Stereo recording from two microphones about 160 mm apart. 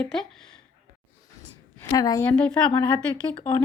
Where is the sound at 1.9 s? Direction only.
25° left (ahead or behind).